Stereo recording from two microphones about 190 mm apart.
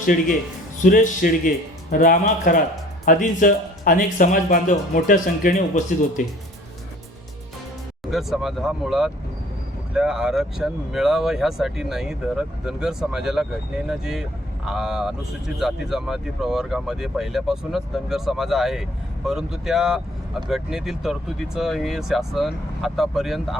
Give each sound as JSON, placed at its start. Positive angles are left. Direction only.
{"t": 0.0, "sound": "speech", "side_deg": 45}
{"t": 8.1, "sound": "speech", "side_deg": 0}